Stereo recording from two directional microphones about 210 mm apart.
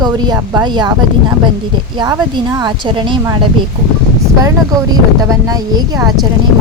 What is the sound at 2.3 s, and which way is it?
A woman's voice, 20° right (ahead or behind).